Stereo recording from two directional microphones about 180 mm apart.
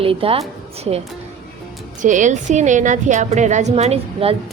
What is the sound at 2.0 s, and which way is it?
A woman's voice, 45° right (ahead or behind).